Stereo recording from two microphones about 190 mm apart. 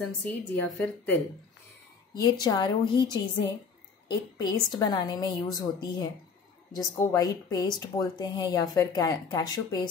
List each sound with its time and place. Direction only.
0.0 s a woman's voice: 5° left (ahead or behind)
2.1 s speech: 20° left (ahead or behind)
4.4 s a woman's voice: 20° left (ahead or behind)